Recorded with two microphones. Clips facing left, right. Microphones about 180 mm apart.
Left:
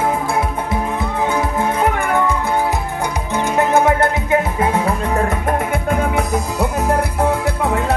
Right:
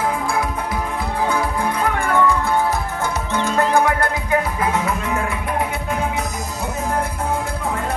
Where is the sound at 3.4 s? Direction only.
20° left (ahead or behind); by 7.8 s 75° left (ahead or behind).